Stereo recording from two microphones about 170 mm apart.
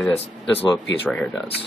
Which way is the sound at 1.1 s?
Centre (ahead or behind).